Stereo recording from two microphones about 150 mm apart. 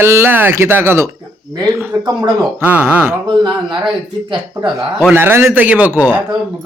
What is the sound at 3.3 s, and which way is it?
Speech, 30° right (ahead or behind).